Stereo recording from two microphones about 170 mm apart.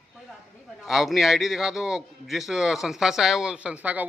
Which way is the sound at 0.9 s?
Centre (ahead or behind).